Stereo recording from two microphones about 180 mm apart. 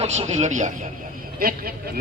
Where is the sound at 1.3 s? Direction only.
55° right (ahead or behind).